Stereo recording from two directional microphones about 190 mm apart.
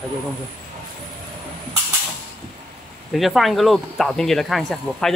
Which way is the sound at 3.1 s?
Centre (ahead or behind).